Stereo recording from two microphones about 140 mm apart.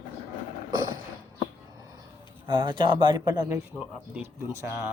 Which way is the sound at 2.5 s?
35° right (ahead or behind).